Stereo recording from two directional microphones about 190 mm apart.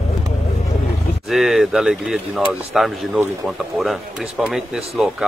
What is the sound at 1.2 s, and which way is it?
Speech, centre (ahead or behind).